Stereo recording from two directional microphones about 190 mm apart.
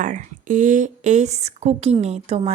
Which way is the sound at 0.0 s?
45° right (ahead or behind).